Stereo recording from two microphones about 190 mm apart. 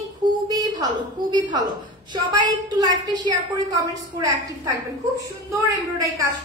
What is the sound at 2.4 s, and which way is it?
A woman's voice, 20° right (ahead or behind).